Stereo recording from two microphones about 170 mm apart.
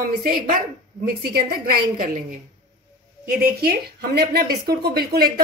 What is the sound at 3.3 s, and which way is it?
A woman's voice, 60° right (ahead or behind).